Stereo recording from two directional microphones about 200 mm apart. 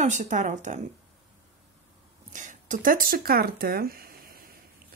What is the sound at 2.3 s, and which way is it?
Speech, 40° right (ahead or behind).